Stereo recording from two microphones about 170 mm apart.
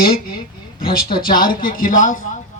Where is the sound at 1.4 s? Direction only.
55° left (ahead or behind).